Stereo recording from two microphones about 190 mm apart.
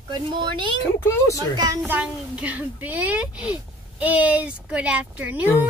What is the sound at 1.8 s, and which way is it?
A woman's voice, 5° right (ahead or behind).